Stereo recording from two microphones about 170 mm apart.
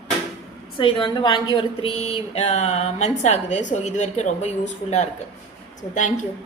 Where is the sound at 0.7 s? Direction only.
30° left (ahead or behind); by 6.1 s 45° left (ahead or behind).